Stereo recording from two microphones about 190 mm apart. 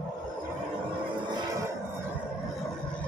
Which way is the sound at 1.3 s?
25° right (ahead or behind).